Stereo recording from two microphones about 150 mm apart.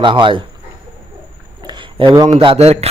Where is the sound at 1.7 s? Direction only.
30° right (ahead or behind).